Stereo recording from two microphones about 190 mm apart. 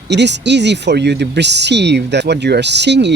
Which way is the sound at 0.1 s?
65° right (ahead or behind).